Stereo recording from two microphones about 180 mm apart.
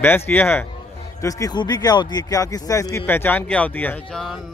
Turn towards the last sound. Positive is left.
turn(degrees=0)  # may be behind; listen again after turning